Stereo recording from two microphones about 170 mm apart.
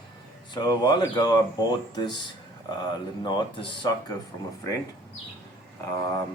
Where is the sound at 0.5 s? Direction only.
25° left (ahead or behind).